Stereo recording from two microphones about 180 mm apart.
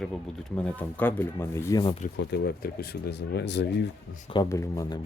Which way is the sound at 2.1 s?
75° left (ahead or behind).